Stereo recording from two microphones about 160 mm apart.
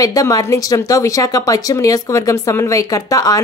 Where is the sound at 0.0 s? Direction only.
20° left (ahead or behind).